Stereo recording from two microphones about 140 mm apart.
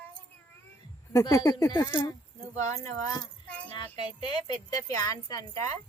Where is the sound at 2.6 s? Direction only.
55° right (ahead or behind).